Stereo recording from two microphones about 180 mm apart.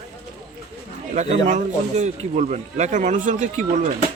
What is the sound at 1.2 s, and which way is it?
Speech, 40° right (ahead or behind).